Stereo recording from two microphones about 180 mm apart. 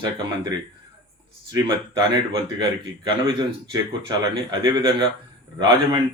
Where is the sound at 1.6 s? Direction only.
25° right (ahead or behind).